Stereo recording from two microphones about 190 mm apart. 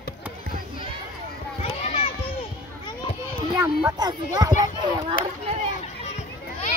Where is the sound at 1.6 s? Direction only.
30° left (ahead or behind).